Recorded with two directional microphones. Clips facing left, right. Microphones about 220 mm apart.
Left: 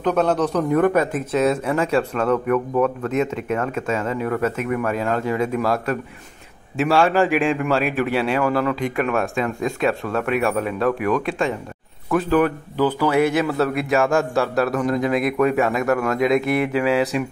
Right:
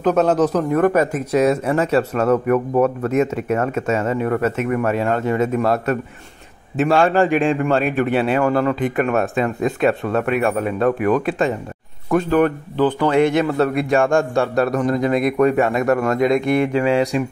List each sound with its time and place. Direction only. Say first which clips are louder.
0.0 s speech: right 3 dB; 5° right (ahead or behind)
2.5 s a man's voice: right 3 dB; 30° right (ahead or behind)
3.0 s a man's voice: right 3 dB; 10° right (ahead or behind)